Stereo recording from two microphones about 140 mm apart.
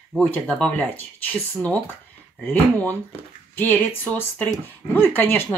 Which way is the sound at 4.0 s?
15° left (ahead or behind).